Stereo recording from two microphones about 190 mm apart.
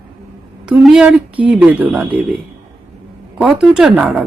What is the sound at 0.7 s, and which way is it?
Speech, 5° right (ahead or behind).